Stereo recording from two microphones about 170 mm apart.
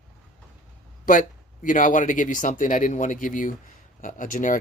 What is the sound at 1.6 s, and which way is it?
Speech, 50° left (ahead or behind).